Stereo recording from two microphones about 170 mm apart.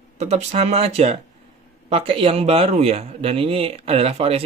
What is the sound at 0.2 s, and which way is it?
A man's voice, 40° right (ahead or behind).